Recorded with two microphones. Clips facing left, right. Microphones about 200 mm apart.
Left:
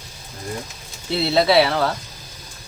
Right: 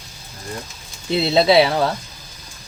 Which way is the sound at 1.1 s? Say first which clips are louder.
Right 2 dB; 20° right (ahead or behind).